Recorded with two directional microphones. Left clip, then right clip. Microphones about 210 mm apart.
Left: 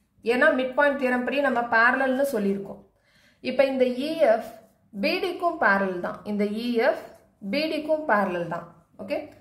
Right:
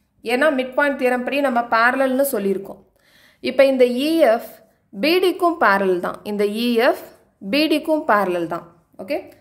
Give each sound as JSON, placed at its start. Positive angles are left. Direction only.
{"t": 0.2, "sound": "a woman's voice", "side_deg": -50}